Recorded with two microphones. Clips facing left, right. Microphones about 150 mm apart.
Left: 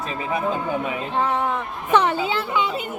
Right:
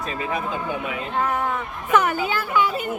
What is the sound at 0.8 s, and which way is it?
A woman's voice, 25° left (ahead or behind).